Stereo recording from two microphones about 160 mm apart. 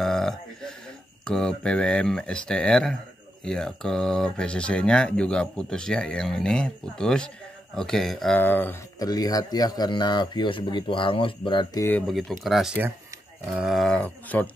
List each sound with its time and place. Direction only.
0.0 s a sound: centre (ahead or behind)
1.2 s speech: 5° left (ahead or behind)
8.4 s speech: 10° left (ahead or behind)
9.0 s a man's voice: 25° left (ahead or behind)
12.1 s speech: centre (ahead or behind)